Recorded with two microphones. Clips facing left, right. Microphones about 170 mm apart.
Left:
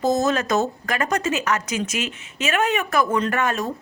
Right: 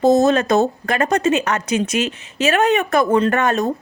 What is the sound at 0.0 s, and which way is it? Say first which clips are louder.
A woman's voice: right 7 dB; 30° right (ahead or behind).